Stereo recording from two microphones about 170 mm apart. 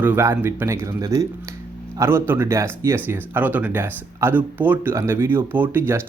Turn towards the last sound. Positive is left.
turn(degrees=-10)  # may be behind; listen again after turning